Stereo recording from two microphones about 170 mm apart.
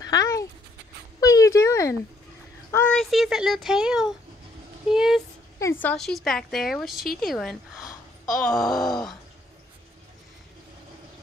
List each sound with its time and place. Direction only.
0.0 s speech: 20° left (ahead or behind)
1.2 s a sound: 20° left (ahead or behind)
2.7 s a woman's voice: 10° left (ahead or behind)
5.6 s a woman's voice: 10° left (ahead or behind)